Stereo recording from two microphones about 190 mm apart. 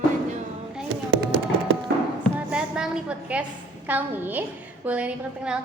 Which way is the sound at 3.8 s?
10° right (ahead or behind).